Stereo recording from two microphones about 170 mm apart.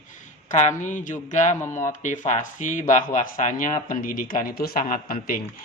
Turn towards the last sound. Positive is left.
turn(degrees=55)  # may be behind; listen again after turning